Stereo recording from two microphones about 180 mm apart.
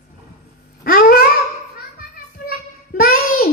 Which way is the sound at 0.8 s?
55° left (ahead or behind).